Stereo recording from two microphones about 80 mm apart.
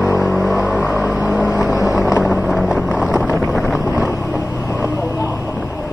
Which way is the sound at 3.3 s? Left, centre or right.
Centre.